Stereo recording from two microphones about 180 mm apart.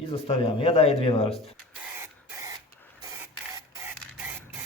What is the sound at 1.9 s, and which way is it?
Spray, 15° right (ahead or behind).